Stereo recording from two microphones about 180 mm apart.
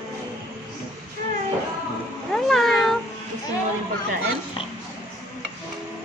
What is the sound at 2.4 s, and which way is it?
Cat, centre (ahead or behind).